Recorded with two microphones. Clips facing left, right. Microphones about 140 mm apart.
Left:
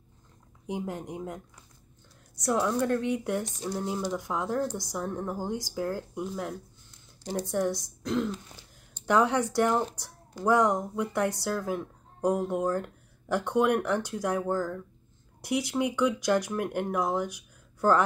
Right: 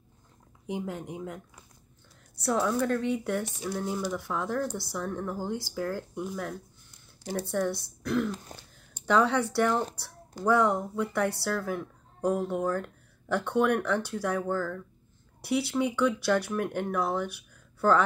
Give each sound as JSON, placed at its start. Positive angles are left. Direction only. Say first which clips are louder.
{"t": 0.7, "sound": "speech", "louder": "even", "side_deg": 15}
{"t": 2.4, "sound": "speech", "louder": "even", "side_deg": 15}
{"t": 7.2, "sound": "speech", "louder": "left 1 dB", "side_deg": 15}
{"t": 8.5, "sound": "speech", "louder": "right 5 dB", "side_deg": -40}
{"t": 9.0, "sound": "speech", "louder": "even", "side_deg": 15}